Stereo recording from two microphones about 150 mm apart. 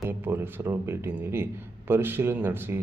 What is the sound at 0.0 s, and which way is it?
Speech, 15° right (ahead or behind).